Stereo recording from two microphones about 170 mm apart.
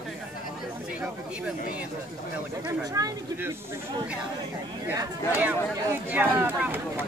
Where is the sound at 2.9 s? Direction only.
20° right (ahead or behind).